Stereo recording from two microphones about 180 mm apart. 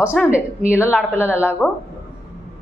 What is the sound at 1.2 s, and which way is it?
Speech, 10° right (ahead or behind).